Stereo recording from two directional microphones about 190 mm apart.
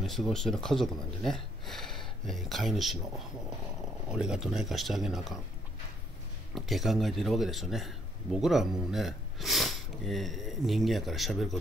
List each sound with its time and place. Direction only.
0.0 s speech: centre (ahead or behind)
4.1 s speech: 5° right (ahead or behind)
6.5 s speech: centre (ahead or behind)